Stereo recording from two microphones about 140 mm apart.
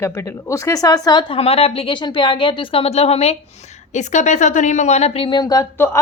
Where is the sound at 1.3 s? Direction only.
45° left (ahead or behind); by 5.6 s 30° left (ahead or behind).